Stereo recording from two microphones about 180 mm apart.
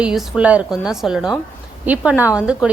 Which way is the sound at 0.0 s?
5° right (ahead or behind).